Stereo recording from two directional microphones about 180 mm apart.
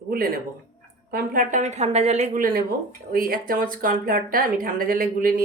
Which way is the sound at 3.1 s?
55° right (ahead or behind).